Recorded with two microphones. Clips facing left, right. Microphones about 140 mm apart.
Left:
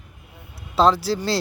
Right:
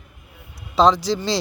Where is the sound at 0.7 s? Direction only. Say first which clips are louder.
Right 1 dB; 5° left (ahead or behind).